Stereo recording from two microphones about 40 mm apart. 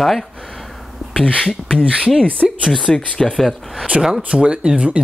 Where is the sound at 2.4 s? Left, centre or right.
Centre.